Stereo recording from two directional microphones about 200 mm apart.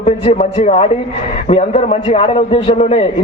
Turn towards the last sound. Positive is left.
turn(degrees=30)  # may be behind; listen again after turning